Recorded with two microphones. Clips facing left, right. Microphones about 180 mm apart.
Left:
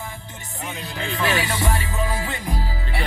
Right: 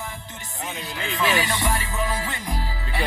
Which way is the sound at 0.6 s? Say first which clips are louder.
Left 1 dB; centre (ahead or behind).